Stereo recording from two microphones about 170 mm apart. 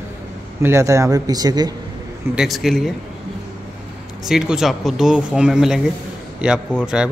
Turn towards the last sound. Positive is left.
turn(degrees=-5)  # may be behind; listen again after turning